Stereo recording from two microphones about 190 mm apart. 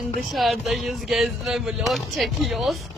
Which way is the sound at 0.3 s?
Centre (ahead or behind).